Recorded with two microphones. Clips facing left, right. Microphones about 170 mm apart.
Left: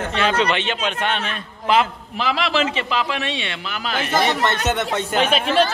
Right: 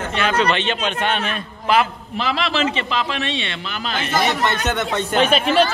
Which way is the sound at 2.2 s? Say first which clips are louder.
Even; 10° left (ahead or behind).